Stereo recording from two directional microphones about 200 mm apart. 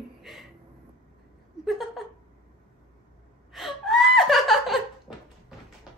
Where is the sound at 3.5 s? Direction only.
Centre (ahead or behind).